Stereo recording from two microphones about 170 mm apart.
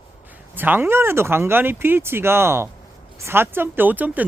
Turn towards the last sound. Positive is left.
turn(degrees=-10)  # may be behind; listen again after turning